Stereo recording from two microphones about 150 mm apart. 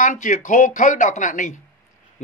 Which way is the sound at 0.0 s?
60° left (ahead or behind).